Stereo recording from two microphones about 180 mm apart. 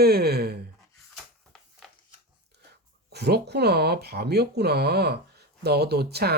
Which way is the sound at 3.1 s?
65° right (ahead or behind).